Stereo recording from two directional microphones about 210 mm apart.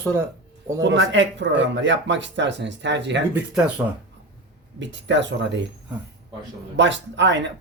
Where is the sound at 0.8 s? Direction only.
60° right (ahead or behind).